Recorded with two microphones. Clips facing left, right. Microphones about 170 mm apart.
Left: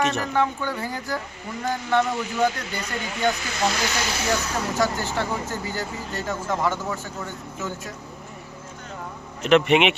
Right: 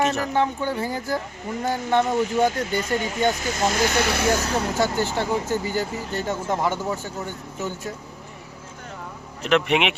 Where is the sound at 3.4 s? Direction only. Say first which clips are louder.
Right 3 dB; 45° right (ahead or behind).